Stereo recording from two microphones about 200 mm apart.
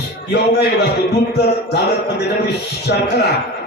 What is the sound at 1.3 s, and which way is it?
Speech, 55° left (ahead or behind).